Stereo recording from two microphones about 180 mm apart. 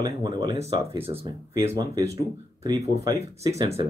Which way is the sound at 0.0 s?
25° right (ahead or behind).